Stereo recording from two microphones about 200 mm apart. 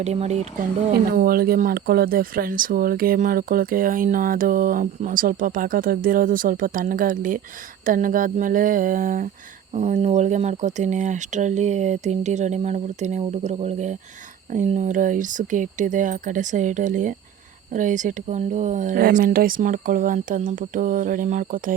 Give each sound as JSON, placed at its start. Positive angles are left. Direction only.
{"t": 0.0, "sound": "speech", "side_deg": -35}
{"t": 1.1, "sound": "speech", "side_deg": -45}